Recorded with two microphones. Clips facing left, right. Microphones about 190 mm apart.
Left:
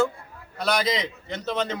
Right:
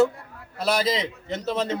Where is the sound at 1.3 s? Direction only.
5° right (ahead or behind).